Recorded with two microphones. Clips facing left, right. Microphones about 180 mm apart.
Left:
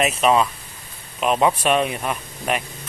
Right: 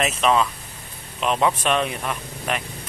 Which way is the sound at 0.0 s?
5° left (ahead or behind).